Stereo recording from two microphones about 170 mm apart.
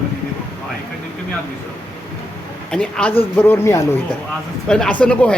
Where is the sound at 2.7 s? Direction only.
5° left (ahead or behind).